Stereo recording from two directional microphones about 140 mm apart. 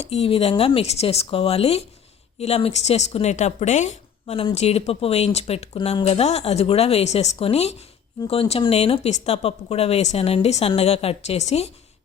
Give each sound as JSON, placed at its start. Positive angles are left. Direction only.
{"t": 0.0, "sound": "a woman's voice", "side_deg": 45}